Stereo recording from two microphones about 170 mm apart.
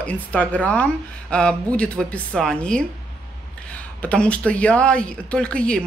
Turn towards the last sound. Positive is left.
turn(degrees=5)  # may be behind; listen again after turning